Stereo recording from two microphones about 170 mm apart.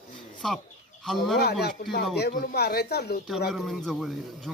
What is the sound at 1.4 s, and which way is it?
Speech, 70° left (ahead or behind).